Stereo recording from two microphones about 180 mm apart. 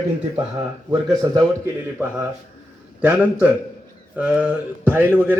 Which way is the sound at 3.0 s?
5° right (ahead or behind).